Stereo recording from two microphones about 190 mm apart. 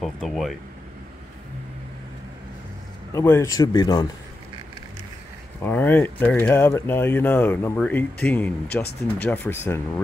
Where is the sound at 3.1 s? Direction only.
15° left (ahead or behind).